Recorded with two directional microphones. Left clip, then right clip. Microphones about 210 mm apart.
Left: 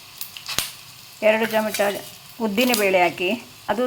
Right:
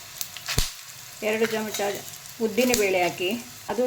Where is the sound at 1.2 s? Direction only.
5° left (ahead or behind).